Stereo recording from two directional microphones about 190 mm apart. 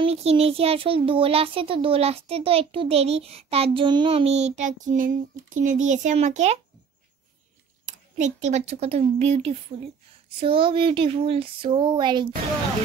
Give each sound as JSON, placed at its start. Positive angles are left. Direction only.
{"t": 0.0, "sound": "child singing", "side_deg": -35}
{"t": 7.8, "sound": "speech", "side_deg": -40}